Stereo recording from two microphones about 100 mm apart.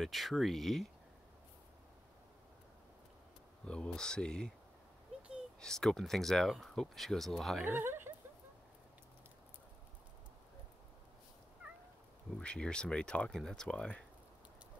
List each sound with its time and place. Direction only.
0.0 s speech: centre (ahead or behind)
3.6 s speech: 10° left (ahead or behind)
5.6 s speech: 5° left (ahead or behind)
7.6 s speech: 25° right (ahead or behind)
12.4 s speech: 10° left (ahead or behind)